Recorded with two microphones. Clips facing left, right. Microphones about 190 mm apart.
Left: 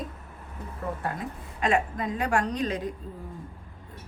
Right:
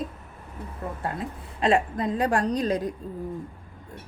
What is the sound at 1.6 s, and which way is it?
A woman's voice, 35° right (ahead or behind).